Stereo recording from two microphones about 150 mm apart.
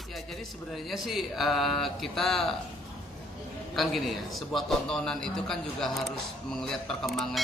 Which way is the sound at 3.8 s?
Centre (ahead or behind).